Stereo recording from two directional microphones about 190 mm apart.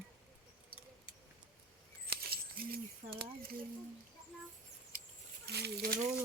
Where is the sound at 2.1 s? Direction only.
55° right (ahead or behind).